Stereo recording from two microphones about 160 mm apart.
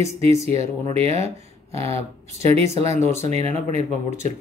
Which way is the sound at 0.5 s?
40° right (ahead or behind).